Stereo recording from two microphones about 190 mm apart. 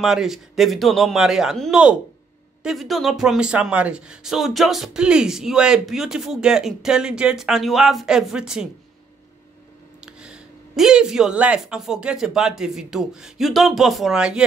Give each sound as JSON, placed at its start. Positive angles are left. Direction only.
{"t": 0.0, "sound": "speech", "side_deg": 0}
{"t": 9.9, "sound": "speech", "side_deg": -5}